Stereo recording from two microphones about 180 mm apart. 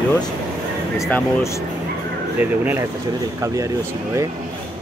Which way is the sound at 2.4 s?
10° right (ahead or behind).